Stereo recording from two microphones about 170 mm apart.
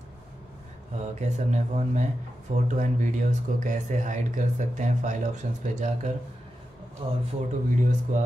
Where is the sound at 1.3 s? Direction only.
45° right (ahead or behind).